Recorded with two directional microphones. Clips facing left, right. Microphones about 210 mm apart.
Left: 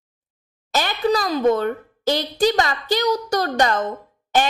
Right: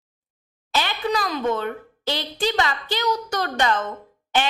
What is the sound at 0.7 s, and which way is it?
Speech, 45° left (ahead or behind).